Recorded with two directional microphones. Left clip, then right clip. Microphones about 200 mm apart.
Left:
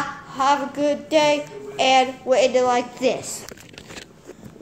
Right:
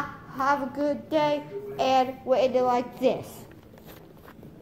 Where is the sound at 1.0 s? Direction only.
25° left (ahead or behind).